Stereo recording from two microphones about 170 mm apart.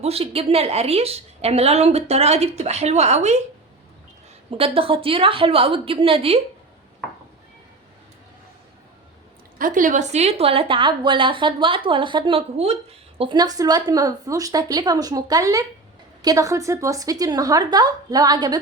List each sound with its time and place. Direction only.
0.0 s a woman's voice: 35° right (ahead or behind)
4.5 s a woman's voice: 35° right (ahead or behind)
9.6 s a woman's voice: 50° right (ahead or behind); by 18.6 s 25° right (ahead or behind)